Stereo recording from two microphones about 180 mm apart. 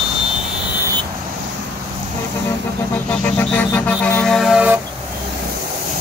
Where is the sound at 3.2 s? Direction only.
10° left (ahead or behind).